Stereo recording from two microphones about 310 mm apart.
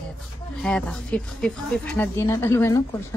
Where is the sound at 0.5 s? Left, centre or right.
Centre.